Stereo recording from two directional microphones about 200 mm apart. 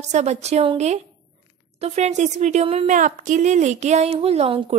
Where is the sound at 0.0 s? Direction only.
35° right (ahead or behind).